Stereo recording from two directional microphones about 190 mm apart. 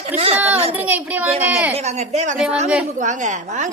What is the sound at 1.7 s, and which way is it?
Speech, 35° right (ahead or behind).